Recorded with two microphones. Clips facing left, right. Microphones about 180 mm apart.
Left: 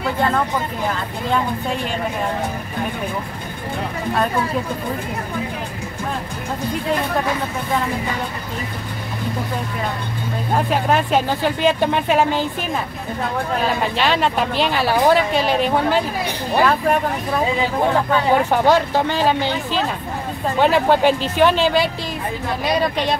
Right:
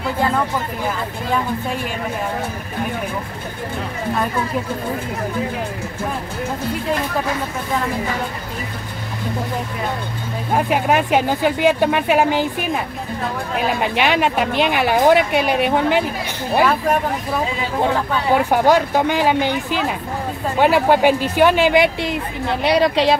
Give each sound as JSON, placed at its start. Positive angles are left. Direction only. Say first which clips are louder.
{"t": 10.5, "sound": "speech", "louder": "right 1 dB", "side_deg": -10}
{"t": 18.5, "sound": "speech", "louder": "right 1 dB", "side_deg": -10}
{"t": 22.6, "sound": "a woman's voice", "louder": "right 5 dB", "side_deg": -75}